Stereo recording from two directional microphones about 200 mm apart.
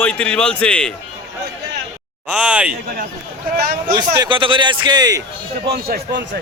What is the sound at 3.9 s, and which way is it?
A man's voice, 20° right (ahead or behind).